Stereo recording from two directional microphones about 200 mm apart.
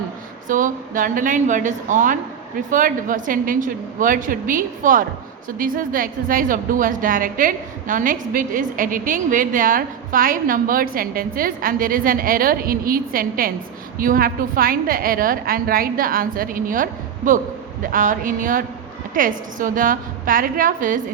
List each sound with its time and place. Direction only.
0.4 s a woman's voice: 40° right (ahead or behind)